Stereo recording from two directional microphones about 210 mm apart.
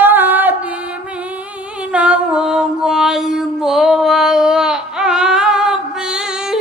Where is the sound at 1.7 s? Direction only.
5° right (ahead or behind).